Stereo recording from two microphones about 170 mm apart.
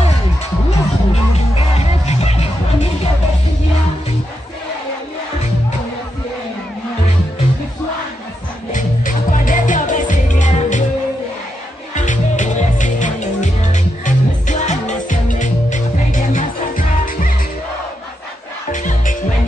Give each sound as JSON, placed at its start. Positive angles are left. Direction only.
{"t": 0.7, "sound": "music", "side_deg": 35}
{"t": 8.7, "sound": "music", "side_deg": 50}
{"t": 11.9, "sound": "music", "side_deg": 45}
{"t": 18.7, "sound": "music", "side_deg": 50}